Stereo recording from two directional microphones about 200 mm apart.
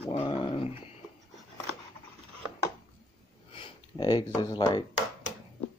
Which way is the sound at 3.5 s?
25° left (ahead or behind).